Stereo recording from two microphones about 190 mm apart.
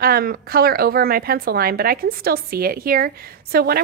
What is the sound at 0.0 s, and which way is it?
A woman's voice, 50° right (ahead or behind).